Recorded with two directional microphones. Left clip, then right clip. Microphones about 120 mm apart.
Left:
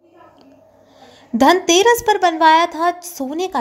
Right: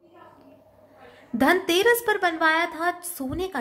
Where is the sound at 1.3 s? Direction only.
30° left (ahead or behind).